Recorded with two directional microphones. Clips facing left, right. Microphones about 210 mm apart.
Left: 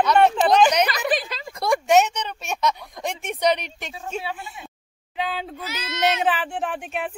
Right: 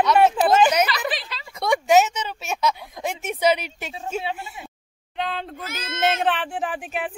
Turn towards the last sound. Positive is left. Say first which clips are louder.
# even
turn(degrees=0)  # may be behind; listen again after turning